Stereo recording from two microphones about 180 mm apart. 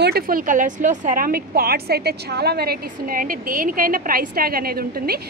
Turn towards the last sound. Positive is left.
turn(degrees=-55)  # may be behind; listen again after turning